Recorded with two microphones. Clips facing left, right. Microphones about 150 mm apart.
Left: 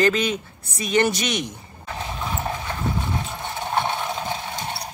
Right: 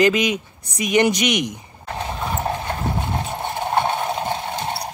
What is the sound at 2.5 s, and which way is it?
Vehicle, 40° right (ahead or behind).